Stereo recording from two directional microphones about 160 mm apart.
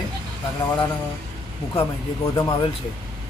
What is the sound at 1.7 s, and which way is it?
Speech, 30° left (ahead or behind).